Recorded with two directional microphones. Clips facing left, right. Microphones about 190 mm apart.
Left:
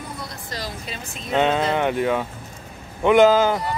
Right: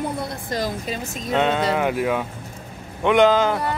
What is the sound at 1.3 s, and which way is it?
Speech, centre (ahead or behind).